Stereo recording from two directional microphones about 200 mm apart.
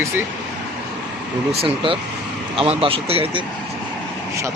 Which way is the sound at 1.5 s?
30° right (ahead or behind).